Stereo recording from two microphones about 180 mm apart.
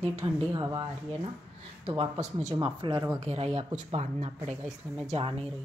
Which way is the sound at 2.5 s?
25° right (ahead or behind).